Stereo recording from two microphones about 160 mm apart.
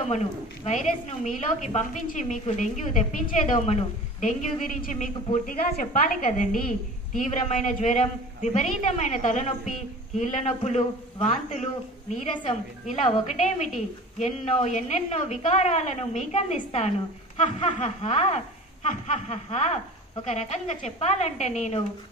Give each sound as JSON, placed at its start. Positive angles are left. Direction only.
{"t": 0.1, "sound": "a woman's voice", "side_deg": 45}